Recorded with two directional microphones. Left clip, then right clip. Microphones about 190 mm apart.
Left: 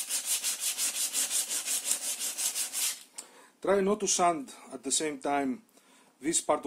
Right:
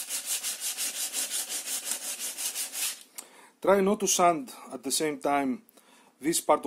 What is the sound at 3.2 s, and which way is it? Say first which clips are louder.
Speech: right 3 dB; 30° right (ahead or behind).